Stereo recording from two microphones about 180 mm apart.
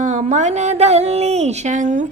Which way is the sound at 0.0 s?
40° right (ahead or behind).